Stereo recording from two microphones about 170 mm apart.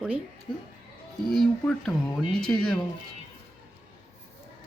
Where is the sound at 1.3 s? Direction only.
5° left (ahead or behind).